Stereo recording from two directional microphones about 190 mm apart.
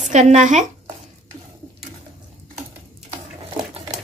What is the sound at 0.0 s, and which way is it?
Speech, 40° right (ahead or behind).